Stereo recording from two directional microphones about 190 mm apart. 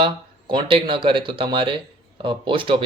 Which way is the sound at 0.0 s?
25° right (ahead or behind).